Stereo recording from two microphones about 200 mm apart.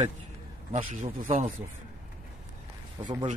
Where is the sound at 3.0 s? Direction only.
20° right (ahead or behind).